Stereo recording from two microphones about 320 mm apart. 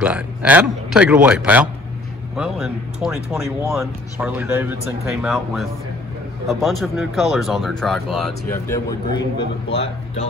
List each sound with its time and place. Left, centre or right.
0.0 s speech: centre